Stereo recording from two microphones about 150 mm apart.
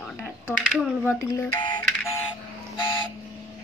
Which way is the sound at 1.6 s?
30° left (ahead or behind).